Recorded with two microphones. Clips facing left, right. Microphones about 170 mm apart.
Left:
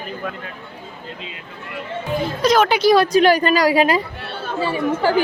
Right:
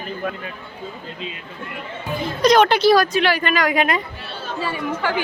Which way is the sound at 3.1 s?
40° left (ahead or behind).